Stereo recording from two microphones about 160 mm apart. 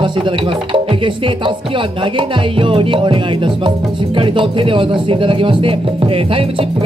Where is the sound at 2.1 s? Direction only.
35° right (ahead or behind).